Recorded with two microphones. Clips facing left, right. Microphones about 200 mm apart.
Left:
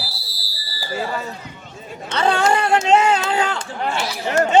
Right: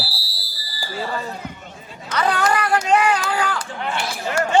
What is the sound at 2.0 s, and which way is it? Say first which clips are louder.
A man's voice: left 2 dB; 25° left (ahead or behind).